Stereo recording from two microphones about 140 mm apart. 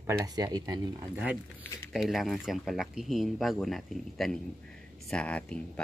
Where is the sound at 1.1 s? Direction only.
10° right (ahead or behind); by 5.8 s 10° left (ahead or behind).